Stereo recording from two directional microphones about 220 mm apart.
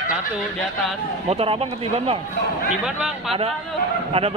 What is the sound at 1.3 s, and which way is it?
Speech, 25° right (ahead or behind).